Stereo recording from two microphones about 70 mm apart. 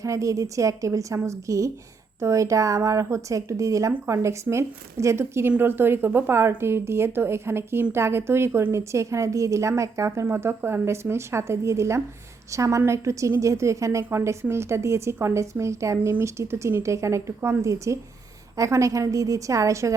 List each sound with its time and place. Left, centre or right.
0.0 s a woman's voice: right